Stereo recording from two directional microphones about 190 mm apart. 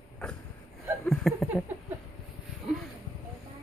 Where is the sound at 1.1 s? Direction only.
Centre (ahead or behind).